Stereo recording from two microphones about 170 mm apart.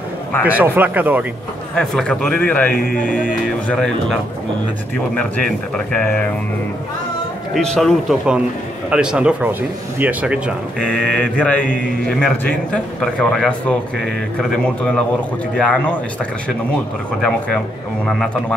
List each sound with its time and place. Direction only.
0.4 s speech: 10° right (ahead or behind)
1.8 s speech: 5° left (ahead or behind)
2.7 s speech: 55° left (ahead or behind)
3.6 s a man's voice: 5° left (ahead or behind)
7.5 s a man's voice: 5° left (ahead or behind)
10.8 s a man's voice: 5° left (ahead or behind)